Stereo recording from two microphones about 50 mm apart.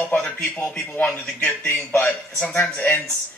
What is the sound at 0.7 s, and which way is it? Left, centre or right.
A man's voice, left.